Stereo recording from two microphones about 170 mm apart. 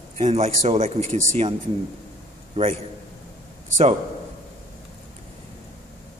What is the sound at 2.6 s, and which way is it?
Speech, 35° right (ahead or behind).